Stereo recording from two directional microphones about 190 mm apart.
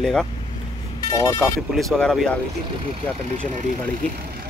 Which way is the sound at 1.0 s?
15° left (ahead or behind).